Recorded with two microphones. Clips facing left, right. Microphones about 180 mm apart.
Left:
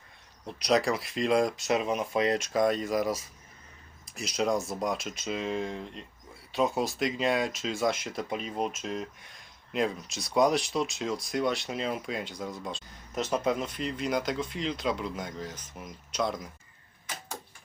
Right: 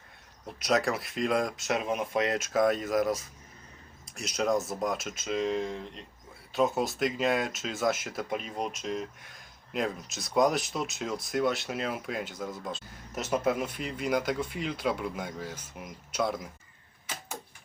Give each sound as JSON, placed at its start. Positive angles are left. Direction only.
{"t": 0.4, "sound": "speech", "side_deg": 0}